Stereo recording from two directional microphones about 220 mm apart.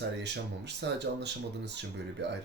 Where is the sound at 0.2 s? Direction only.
50° right (ahead or behind).